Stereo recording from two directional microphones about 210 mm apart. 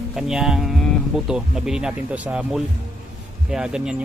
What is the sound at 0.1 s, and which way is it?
Speech, centre (ahead or behind).